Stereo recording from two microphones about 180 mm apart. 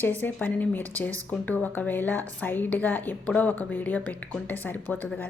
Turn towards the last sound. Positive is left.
turn(degrees=10)  # may be behind; listen again after turning